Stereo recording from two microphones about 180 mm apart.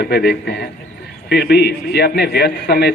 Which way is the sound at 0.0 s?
60° left (ahead or behind).